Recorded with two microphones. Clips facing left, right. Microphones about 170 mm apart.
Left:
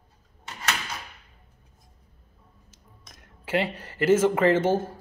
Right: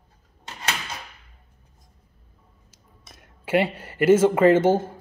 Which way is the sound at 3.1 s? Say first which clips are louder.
Right 5 dB; 25° right (ahead or behind).